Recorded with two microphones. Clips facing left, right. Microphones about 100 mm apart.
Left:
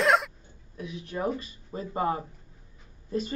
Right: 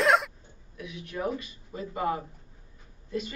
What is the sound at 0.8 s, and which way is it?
A man's voice, 30° left (ahead or behind).